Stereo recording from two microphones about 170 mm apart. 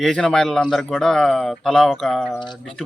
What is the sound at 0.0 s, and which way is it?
Speech, centre (ahead or behind).